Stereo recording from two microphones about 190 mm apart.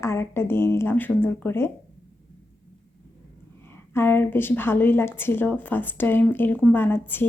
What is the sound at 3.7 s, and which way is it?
Speech, 10° left (ahead or behind).